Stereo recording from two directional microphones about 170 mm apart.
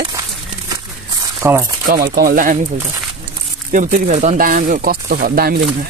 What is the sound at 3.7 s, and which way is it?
Speech, 50° right (ahead or behind).